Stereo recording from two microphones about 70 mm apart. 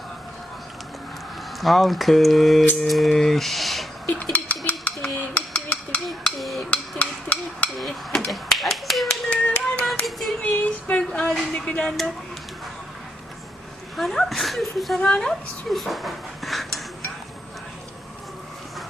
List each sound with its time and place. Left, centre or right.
1.6 s speech: centre
4.0 s dishes: left
6.1 s a sound: centre
6.7 s a sound: centre
7.8 s hammer: centre
8.3 s speech: centre
9.3 s music: centre
10.4 s speech: left; by 12.1 s centre
13.9 s speech: centre
14.9 s speech: centre